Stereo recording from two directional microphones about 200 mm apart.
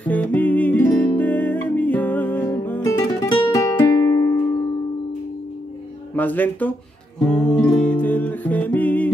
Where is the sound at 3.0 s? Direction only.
20° left (ahead or behind).